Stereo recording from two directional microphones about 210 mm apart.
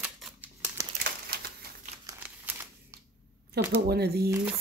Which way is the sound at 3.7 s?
50° right (ahead or behind).